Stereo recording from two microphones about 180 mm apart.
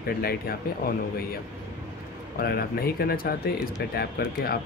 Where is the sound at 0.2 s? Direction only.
60° left (ahead or behind).